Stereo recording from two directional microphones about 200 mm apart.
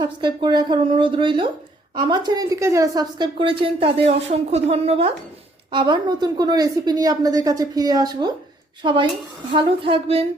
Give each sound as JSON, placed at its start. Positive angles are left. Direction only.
{"t": 0.0, "sound": "a woman's voice", "side_deg": -20}